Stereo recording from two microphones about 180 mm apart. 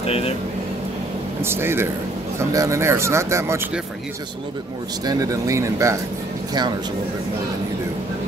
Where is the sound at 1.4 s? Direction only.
15° right (ahead or behind).